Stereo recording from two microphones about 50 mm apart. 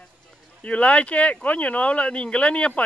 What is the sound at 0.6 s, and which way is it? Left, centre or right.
Speech, left.